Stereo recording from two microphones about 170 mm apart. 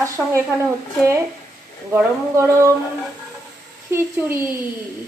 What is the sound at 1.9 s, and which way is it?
Speech, 15° right (ahead or behind).